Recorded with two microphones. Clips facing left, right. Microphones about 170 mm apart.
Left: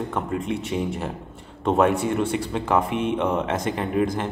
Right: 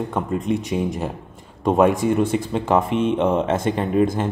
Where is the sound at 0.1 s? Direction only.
15° right (ahead or behind).